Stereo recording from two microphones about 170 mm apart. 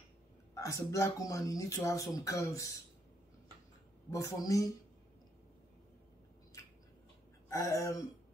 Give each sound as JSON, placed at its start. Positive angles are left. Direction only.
{"t": 0.6, "sound": "speech", "side_deg": 20}
{"t": 4.1, "sound": "speech", "side_deg": 20}
{"t": 7.4, "sound": "speech", "side_deg": 20}